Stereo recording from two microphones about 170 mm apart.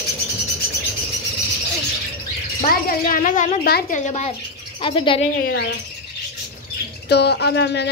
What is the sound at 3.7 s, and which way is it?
Speech, 65° left (ahead or behind).